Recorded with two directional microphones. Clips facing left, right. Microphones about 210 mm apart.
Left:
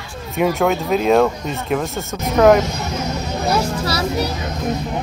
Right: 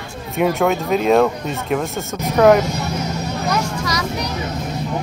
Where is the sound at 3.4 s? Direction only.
30° left (ahead or behind).